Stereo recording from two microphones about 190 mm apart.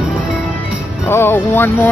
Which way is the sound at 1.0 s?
10° left (ahead or behind).